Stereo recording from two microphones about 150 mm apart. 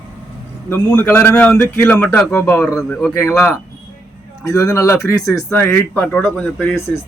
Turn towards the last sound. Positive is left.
turn(degrees=10)  # may be behind; listen again after turning